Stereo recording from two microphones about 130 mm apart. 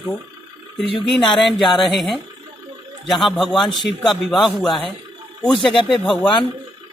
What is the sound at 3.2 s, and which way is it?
Speech, centre (ahead or behind).